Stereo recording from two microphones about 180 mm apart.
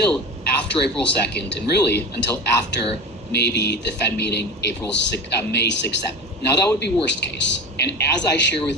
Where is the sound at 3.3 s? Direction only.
65° left (ahead or behind).